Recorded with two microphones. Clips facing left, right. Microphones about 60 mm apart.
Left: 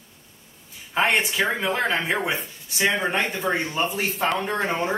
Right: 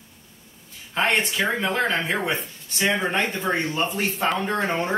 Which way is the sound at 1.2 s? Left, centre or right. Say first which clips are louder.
Even; centre.